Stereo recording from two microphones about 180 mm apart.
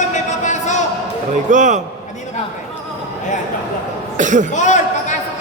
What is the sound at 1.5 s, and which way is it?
Speech, 45° right (ahead or behind).